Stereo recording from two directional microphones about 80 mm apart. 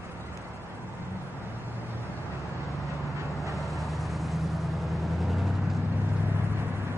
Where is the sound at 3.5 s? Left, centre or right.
Centre.